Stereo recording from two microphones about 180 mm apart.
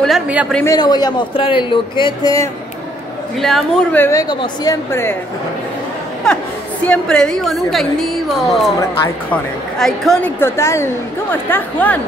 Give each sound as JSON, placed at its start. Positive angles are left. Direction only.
{"t": 0.0, "sound": "a woman's voice", "side_deg": -5}
{"t": 0.7, "sound": "a man's voice", "side_deg": 25}
{"t": 3.3, "sound": "a woman's voice", "side_deg": 0}
{"t": 4.0, "sound": "a man's voice", "side_deg": 20}
{"t": 6.2, "sound": "a woman's voice", "side_deg": 5}